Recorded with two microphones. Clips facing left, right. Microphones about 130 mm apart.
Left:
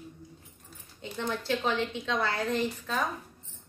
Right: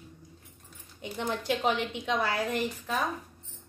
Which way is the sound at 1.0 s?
15° right (ahead or behind).